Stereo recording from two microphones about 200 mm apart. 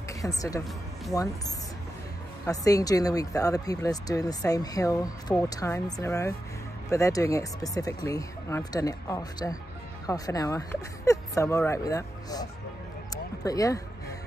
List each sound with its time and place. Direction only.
0.1 s a woman's voice: 15° left (ahead or behind)
2.4 s speech: 15° left (ahead or behind)
13.1 s a sound: 20° left (ahead or behind)